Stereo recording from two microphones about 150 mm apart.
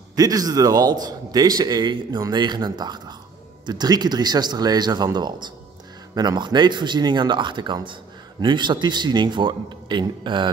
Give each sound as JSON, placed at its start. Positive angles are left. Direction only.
{"t": 0.1, "sound": "a man's voice", "side_deg": -25}